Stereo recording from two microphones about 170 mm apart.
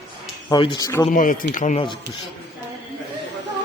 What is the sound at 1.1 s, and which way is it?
Speech, 50° left (ahead or behind).